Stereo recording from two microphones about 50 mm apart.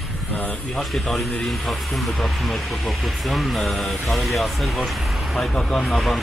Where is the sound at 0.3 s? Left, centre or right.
Left.